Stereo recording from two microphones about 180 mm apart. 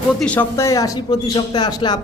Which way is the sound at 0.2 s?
10° left (ahead or behind).